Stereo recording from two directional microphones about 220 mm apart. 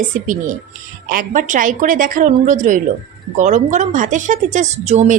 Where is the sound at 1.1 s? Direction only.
35° right (ahead or behind).